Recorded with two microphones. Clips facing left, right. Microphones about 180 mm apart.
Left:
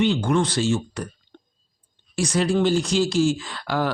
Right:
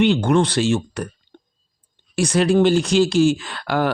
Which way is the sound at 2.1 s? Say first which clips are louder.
Right 5 dB; 65° right (ahead or behind).